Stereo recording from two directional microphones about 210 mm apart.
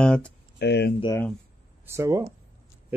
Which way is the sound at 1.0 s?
20° left (ahead or behind).